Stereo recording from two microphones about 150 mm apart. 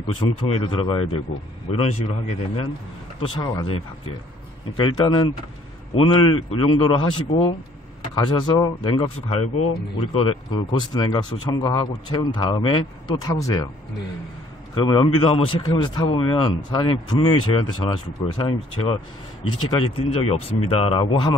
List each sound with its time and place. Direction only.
0.1 s a man's voice: 40° left (ahead or behind)
14.8 s a man's voice: 30° left (ahead or behind)